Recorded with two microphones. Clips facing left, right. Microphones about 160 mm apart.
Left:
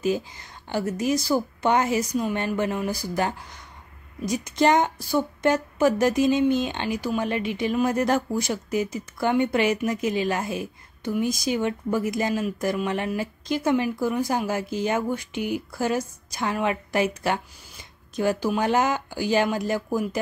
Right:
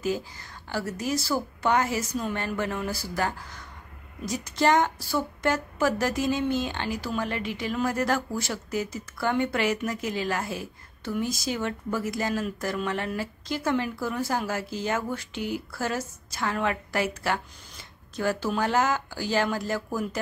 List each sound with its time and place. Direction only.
0.0 s a woman's voice: 20° left (ahead or behind)